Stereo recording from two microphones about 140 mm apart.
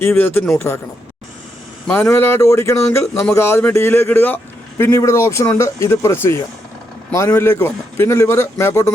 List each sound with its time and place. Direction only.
0.0 s speech: 15° left (ahead or behind)
1.9 s a man's voice: 15° left (ahead or behind)